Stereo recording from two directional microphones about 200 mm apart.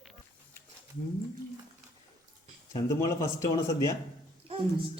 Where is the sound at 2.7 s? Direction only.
15° left (ahead or behind).